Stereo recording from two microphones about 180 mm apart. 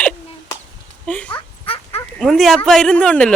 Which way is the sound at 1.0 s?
5° left (ahead or behind).